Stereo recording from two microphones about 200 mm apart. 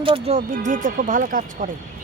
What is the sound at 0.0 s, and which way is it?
A woman's voice, 30° right (ahead or behind).